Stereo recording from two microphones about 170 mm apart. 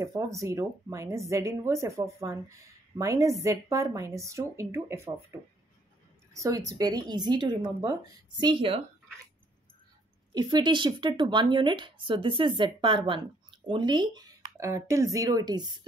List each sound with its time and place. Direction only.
0.0 s a woman's voice: 20° right (ahead or behind)
10.3 s speech: 25° right (ahead or behind)